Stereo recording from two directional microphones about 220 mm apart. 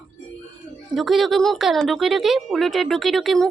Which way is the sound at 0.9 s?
Centre (ahead or behind).